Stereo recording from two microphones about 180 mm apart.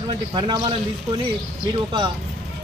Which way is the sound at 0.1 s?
25° right (ahead or behind).